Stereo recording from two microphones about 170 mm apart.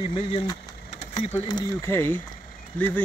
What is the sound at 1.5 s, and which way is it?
Speech, 15° left (ahead or behind).